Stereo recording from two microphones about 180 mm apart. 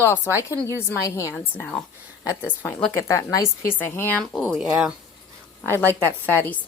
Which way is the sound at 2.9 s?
15° left (ahead or behind).